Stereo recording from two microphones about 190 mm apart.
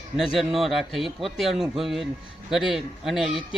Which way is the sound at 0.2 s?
Centre (ahead or behind).